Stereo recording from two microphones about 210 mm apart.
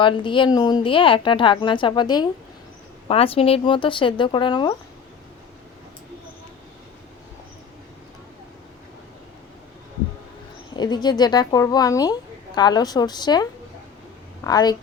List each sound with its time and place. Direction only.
0.0 s a woman's voice: 25° left (ahead or behind)
10.8 s a woman's voice: 20° left (ahead or behind)